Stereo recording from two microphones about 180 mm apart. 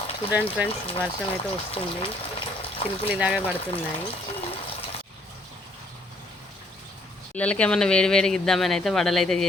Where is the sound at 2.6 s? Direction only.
35° left (ahead or behind).